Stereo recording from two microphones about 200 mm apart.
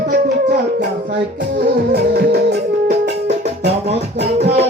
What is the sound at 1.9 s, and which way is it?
Music, 55° right (ahead or behind).